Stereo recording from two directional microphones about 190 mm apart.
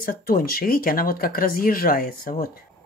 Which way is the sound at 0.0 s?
50° left (ahead or behind).